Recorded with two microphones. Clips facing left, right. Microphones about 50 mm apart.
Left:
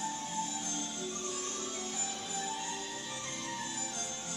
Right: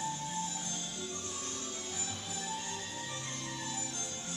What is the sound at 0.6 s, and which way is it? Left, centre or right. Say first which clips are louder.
Music: left 3 dB; left.